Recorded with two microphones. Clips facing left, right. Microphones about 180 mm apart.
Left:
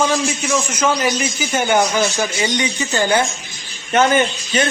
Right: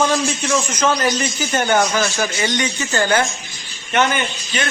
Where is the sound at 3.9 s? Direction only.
35° left (ahead or behind).